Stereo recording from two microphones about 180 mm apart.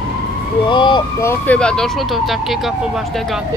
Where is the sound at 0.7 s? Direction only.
25° left (ahead or behind).